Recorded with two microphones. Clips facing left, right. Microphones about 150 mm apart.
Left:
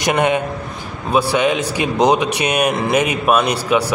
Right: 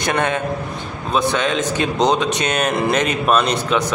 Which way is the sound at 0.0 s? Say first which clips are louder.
Left 3 dB; 15° left (ahead or behind).